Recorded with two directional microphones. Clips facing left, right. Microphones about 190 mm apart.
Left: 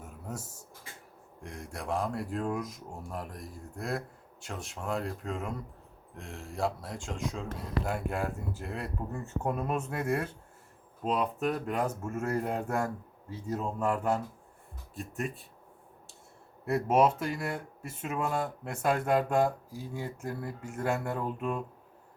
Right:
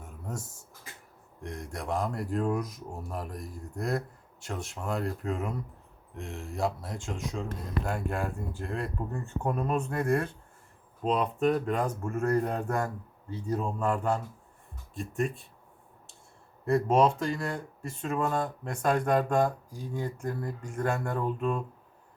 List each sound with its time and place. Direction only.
0.0 s a sound: 5° left (ahead or behind)
1.4 s speech: centre (ahead or behind)
16.6 s speech: 5° left (ahead or behind)